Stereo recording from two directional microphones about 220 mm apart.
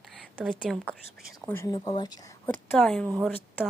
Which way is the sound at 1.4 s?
10° left (ahead or behind).